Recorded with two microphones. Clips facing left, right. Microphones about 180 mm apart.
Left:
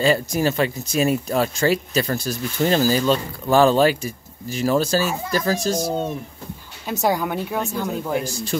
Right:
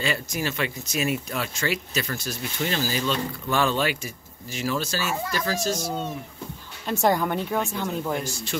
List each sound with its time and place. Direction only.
0.0 s speech: 35° left (ahead or behind)
6.9 s speech: 5° left (ahead or behind)